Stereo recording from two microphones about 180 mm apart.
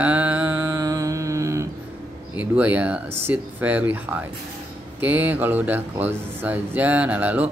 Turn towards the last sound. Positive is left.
turn(degrees=-10)  # may be behind; listen again after turning